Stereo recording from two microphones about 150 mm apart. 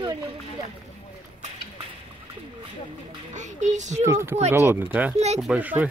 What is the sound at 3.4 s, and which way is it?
Music, 55° right (ahead or behind).